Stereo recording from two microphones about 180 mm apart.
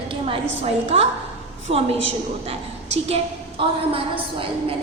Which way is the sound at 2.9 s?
35° right (ahead or behind).